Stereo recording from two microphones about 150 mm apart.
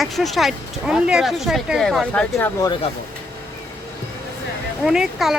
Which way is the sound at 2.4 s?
20° left (ahead or behind).